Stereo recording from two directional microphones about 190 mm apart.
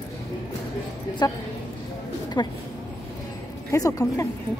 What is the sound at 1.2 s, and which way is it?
A woman's voice, 20° left (ahead or behind).